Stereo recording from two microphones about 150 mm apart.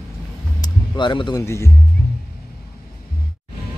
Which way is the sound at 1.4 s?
15° left (ahead or behind).